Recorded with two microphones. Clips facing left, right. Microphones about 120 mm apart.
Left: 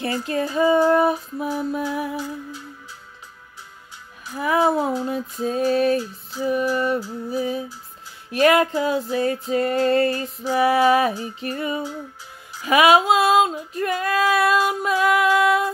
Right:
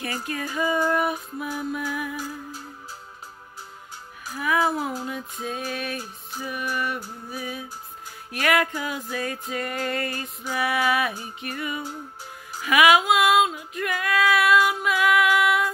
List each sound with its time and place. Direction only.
0.0 s music: 30° left (ahead or behind)
4.3 s music: 30° left (ahead or behind)